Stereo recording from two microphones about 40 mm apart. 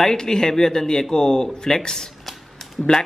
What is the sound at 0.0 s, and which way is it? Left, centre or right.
Speech, centre.